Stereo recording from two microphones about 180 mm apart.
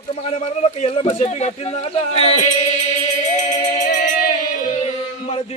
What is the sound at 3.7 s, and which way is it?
Music, 50° left (ahead or behind).